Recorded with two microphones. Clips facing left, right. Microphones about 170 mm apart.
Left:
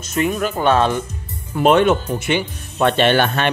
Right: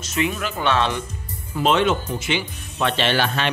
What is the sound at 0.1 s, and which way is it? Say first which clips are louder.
Speech: left 5 dB; 45° left (ahead or behind).